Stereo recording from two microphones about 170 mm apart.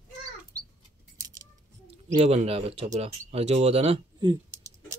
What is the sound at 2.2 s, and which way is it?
Speech, 35° right (ahead or behind).